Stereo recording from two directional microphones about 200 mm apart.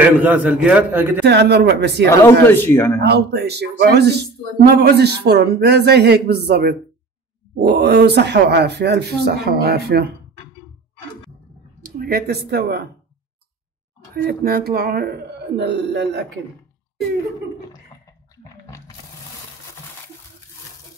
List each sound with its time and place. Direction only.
0.2 s a man's voice: 10° right (ahead or behind)
1.2 s speech: 55° right (ahead or behind)
2.4 s speech: 10° left (ahead or behind)
3.0 s speech: 55° right (ahead or behind)
11.8 s speech: 50° right (ahead or behind)
14.1 s speech: 50° right (ahead or behind)